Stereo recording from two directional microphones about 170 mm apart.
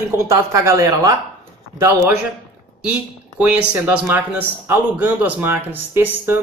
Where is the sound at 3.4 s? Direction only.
5° right (ahead or behind).